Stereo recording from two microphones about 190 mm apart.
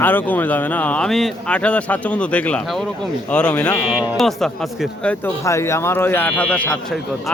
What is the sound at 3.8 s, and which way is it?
Speech, 5° right (ahead or behind).